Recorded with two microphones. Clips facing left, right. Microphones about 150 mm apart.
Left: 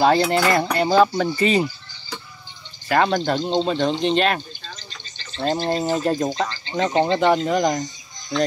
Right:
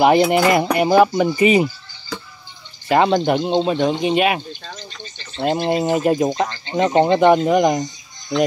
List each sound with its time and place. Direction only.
0.0 s speech: 15° right (ahead or behind)
2.9 s speech: 20° right (ahead or behind)
4.6 s a sound: 60° right (ahead or behind)
5.4 s speech: 10° right (ahead or behind)